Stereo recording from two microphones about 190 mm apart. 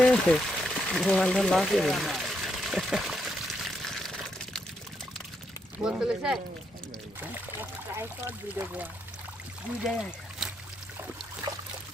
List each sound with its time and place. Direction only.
0.0 s pour: 5° left (ahead or behind)
0.5 s water: centre (ahead or behind)
5.8 s speech: 5° right (ahead or behind)
7.6 s speech: 10° right (ahead or behind)
11.4 s trickle: 20° right (ahead or behind)